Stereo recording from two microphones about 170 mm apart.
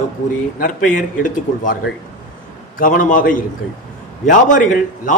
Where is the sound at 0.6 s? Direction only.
50° left (ahead or behind).